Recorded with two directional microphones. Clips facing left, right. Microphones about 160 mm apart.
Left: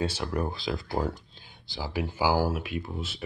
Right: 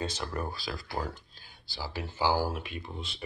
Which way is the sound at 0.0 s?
10° left (ahead or behind).